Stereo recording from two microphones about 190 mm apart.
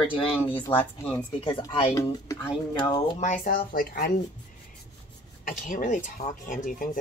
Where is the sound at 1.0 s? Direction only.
25° left (ahead or behind).